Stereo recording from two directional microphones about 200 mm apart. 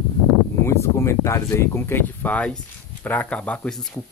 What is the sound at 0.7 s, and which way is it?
Speech, 15° left (ahead or behind).